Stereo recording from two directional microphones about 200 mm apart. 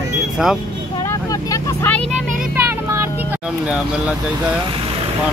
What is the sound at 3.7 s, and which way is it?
Speech, 5° right (ahead or behind).